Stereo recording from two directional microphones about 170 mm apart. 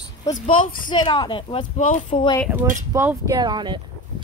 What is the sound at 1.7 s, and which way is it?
Speech, 50° left (ahead or behind).